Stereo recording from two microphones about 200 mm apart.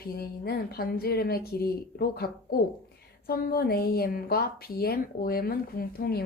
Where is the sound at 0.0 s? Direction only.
50° left (ahead or behind).